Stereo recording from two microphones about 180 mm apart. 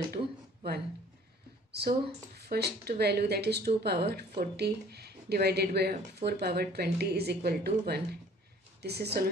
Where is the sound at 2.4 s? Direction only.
60° right (ahead or behind).